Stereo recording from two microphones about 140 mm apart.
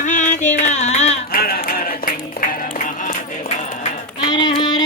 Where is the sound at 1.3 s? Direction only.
90° left.